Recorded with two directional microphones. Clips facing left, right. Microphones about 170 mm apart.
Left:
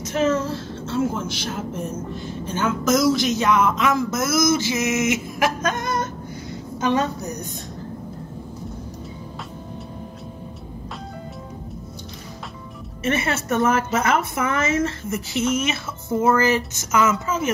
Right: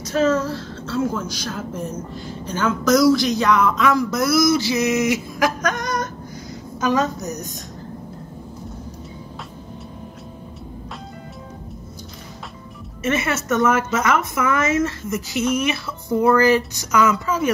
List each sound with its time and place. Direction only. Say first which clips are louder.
0.1 s a woman's voice: right 2 dB; 20° left (ahead or behind)
13.0 s speech: right 1 dB; 30° left (ahead or behind)